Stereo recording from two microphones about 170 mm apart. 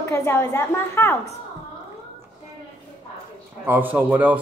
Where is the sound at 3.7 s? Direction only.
10° right (ahead or behind).